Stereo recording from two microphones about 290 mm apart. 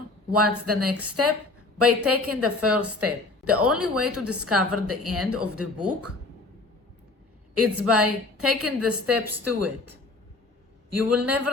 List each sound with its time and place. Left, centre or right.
0.3 s a woman's voice: right
7.5 s a woman's voice: right
11.3 s speech: right